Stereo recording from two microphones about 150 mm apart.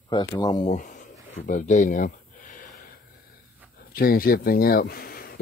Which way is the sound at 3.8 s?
75° left (ahead or behind).